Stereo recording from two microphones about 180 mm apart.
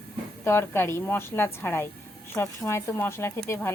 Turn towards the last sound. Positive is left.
turn(degrees=15)  # may be behind; listen again after turning